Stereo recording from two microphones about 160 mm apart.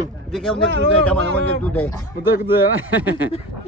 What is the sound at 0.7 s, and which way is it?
Speech, 90° right.